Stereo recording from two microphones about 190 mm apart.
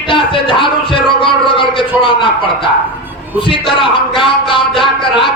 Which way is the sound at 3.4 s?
25° left (ahead or behind).